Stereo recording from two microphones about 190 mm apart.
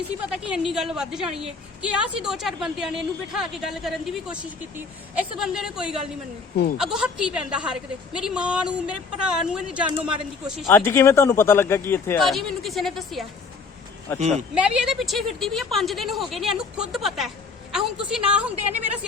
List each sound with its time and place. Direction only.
0.3 s a woman's voice: 5° right (ahead or behind)
10.7 s speech: 10° left (ahead or behind)
12.2 s a woman's voice: centre (ahead or behind)
14.2 s speech: 35° right (ahead or behind)
14.5 s a woman's voice: 5° right (ahead or behind)